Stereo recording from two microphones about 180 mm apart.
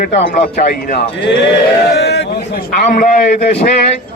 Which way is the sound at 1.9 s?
70° left (ahead or behind).